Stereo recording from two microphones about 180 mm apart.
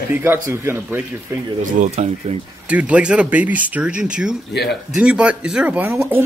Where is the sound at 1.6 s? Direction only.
40° right (ahead or behind).